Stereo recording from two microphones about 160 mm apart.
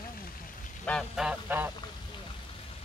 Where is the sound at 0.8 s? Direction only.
Centre (ahead or behind).